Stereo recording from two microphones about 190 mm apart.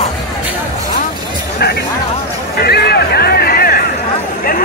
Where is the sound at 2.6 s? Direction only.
55° left (ahead or behind).